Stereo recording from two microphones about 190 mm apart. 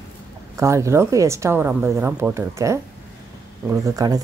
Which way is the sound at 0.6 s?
15° right (ahead or behind).